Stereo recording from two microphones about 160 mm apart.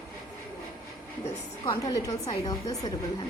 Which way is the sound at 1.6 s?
25° left (ahead or behind).